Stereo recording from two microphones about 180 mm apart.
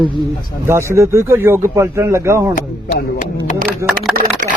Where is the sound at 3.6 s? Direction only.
10° right (ahead or behind).